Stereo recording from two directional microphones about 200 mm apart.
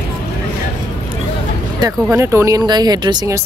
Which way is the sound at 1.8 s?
15° right (ahead or behind).